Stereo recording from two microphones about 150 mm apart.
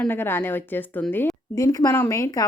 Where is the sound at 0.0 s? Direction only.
15° left (ahead or behind).